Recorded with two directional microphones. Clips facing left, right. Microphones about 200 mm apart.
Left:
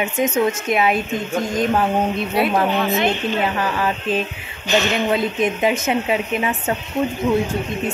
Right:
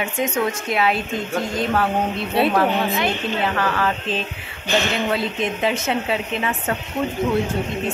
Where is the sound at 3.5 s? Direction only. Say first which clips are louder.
Even; 15° left (ahead or behind).